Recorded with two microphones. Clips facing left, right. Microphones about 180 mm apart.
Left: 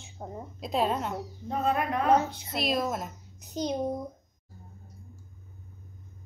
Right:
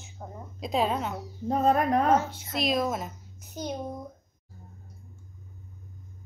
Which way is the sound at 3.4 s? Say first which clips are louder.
Left 4 dB; 15° left (ahead or behind).